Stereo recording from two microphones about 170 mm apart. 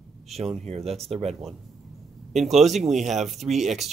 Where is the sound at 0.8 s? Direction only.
Centre (ahead or behind).